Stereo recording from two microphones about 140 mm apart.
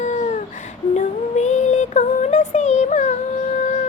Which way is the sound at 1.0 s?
55° left (ahead or behind).